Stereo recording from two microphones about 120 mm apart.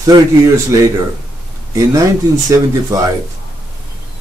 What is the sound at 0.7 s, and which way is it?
Speech, 25° right (ahead or behind).